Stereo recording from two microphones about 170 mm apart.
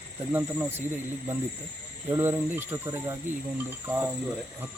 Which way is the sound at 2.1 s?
15° right (ahead or behind).